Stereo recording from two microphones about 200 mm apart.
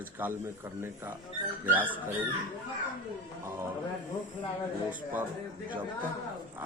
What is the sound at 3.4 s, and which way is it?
Speech, 10° right (ahead or behind).